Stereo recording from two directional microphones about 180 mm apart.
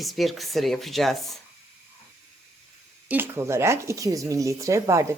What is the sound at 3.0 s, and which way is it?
Speech, 10° right (ahead or behind).